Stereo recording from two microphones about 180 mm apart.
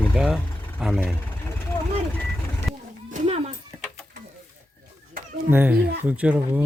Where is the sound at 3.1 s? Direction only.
40° right (ahead or behind).